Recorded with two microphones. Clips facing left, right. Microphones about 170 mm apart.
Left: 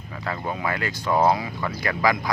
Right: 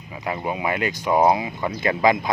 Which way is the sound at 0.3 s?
15° right (ahead or behind).